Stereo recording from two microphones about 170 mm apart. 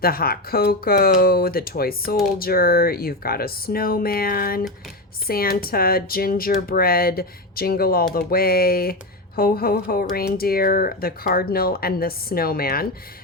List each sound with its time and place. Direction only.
0.0 s speech: 60° left (ahead or behind)